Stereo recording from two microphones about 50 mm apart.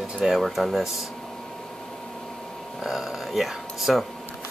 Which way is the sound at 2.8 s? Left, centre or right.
Centre.